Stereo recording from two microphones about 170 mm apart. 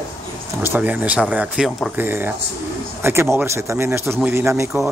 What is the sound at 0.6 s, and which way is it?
A man's voice, 10° right (ahead or behind).